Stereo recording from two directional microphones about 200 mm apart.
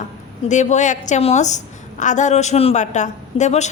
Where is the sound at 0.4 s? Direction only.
35° left (ahead or behind).